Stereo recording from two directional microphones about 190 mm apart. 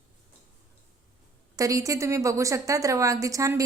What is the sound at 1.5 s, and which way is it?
A woman's voice, 20° right (ahead or behind).